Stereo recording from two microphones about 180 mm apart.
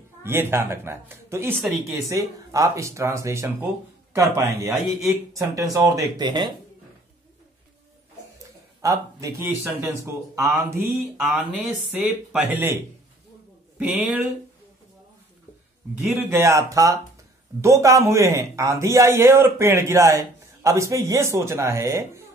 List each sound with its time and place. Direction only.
0.2 s a man's voice: 15° right (ahead or behind)
8.8 s a man's voice: 15° right (ahead or behind)
11.1 s speech: centre (ahead or behind)
13.7 s speech: centre (ahead or behind)
16.3 s a man's voice: 15° right (ahead or behind)